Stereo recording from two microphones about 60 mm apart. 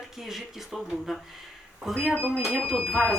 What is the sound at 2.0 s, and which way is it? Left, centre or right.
Speech, left.